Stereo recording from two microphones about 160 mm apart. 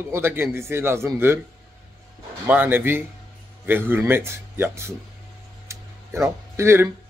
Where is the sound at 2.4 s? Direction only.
10° right (ahead or behind).